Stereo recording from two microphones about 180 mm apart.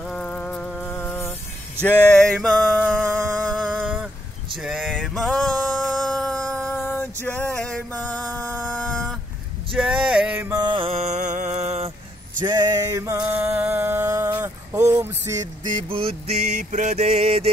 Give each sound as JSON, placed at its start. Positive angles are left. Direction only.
{"t": 0.0, "sound": "music", "side_deg": 5}
{"t": 1.8, "sound": "a sound", "side_deg": 10}
{"t": 2.6, "sound": "music", "side_deg": 10}
{"t": 4.6, "sound": "male singing", "side_deg": 0}
{"t": 7.2, "sound": "music", "side_deg": 10}
{"t": 9.7, "sound": "a sound", "side_deg": -5}
{"t": 10.5, "sound": "mantra", "side_deg": -25}
{"t": 12.4, "sound": "a sound", "side_deg": -20}
{"t": 15.9, "sound": "mantra", "side_deg": -30}